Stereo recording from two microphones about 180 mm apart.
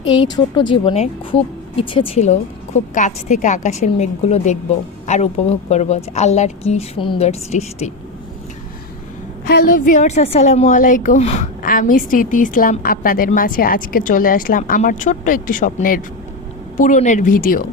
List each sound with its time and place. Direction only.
0.2 s a woman's voice: 25° left (ahead or behind)
9.5 s a woman's voice: 50° left (ahead or behind)